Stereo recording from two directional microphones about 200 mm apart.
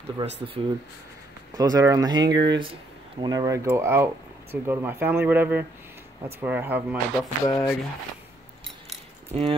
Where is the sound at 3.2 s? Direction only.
20° right (ahead or behind).